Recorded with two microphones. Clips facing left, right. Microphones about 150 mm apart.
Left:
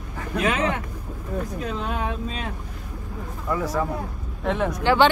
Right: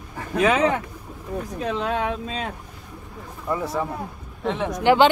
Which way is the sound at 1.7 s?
85° right.